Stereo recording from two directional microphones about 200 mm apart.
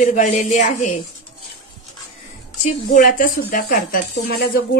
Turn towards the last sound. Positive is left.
turn(degrees=50)  # may be behind; listen again after turning